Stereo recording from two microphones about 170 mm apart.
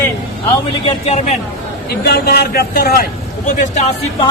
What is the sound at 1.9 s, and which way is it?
A man's voice, 70° left (ahead or behind).